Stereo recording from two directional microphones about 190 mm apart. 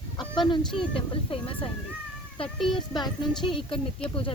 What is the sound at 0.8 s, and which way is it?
Speech, 30° left (ahead or behind).